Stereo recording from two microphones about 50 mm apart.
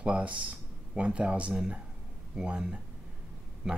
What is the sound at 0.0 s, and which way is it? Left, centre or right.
Speech, right.